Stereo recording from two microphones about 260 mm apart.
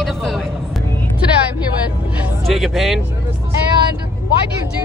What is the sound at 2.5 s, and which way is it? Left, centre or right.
Speech, centre.